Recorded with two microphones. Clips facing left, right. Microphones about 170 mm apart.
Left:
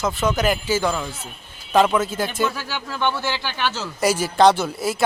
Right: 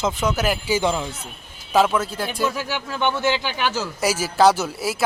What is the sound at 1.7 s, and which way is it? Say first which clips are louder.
Speech: left 1 dB; centre (ahead or behind).